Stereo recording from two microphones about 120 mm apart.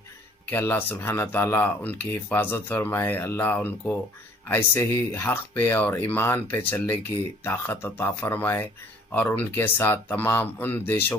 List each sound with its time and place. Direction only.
0.5 s speech: 15° left (ahead or behind)